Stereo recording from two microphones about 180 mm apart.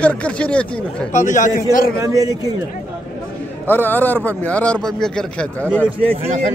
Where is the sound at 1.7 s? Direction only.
55° left (ahead or behind).